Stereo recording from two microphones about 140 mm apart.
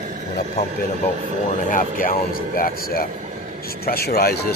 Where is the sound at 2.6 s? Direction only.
90° left.